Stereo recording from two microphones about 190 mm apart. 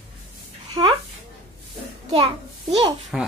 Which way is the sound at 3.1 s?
5° right (ahead or behind).